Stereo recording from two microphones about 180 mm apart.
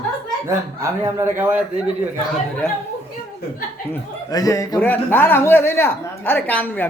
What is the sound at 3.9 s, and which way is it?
Speech, 20° left (ahead or behind).